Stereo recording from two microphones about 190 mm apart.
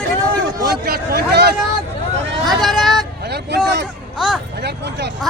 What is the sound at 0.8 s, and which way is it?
Speech, 55° right (ahead or behind).